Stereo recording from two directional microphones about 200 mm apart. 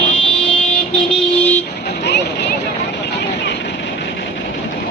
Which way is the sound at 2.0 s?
60° left (ahead or behind).